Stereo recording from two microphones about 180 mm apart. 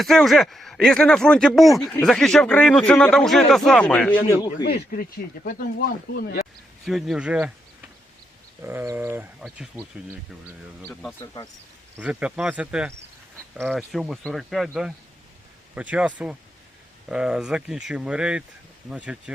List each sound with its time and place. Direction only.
0.0 s a man's voice: centre (ahead or behind)
4.6 s speech: 55° left (ahead or behind)
6.8 s a man's voice: centre (ahead or behind)
8.6 s speech: 15° right (ahead or behind)
10.8 s speech: 10° left (ahead or behind)
11.9 s a man's voice: 5° right (ahead or behind)